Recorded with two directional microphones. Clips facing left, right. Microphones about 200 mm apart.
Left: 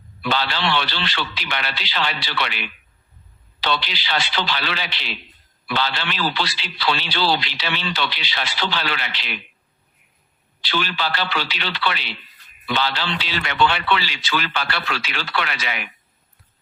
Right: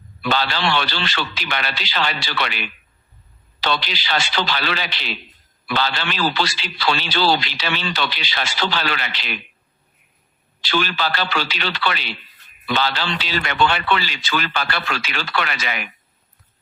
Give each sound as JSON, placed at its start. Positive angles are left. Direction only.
{"t": 0.2, "sound": "a man's voice", "side_deg": -45}
{"t": 10.6, "sound": "a man's voice", "side_deg": -45}